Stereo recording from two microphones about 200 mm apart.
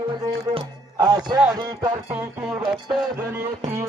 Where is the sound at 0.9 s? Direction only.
20° right (ahead or behind).